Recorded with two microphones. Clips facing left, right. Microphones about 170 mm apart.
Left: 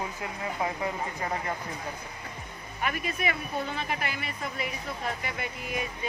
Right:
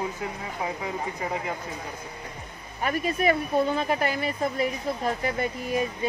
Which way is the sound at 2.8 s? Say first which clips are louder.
Right 6 dB; 35° right (ahead or behind).